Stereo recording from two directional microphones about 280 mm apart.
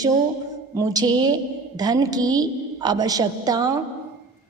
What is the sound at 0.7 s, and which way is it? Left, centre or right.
A woman's voice, centre.